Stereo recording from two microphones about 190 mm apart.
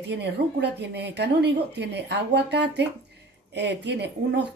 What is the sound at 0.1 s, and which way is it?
Speech, 60° right (ahead or behind).